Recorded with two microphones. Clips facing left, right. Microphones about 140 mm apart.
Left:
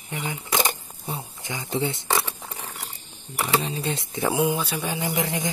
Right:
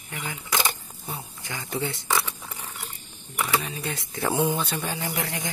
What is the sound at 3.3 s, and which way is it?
Speech, 30° left (ahead or behind).